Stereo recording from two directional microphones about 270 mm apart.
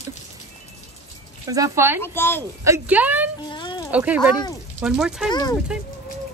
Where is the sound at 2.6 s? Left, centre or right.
Centre.